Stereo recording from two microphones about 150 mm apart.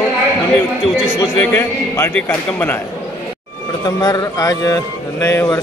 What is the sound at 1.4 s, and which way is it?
A man's voice, 15° left (ahead or behind).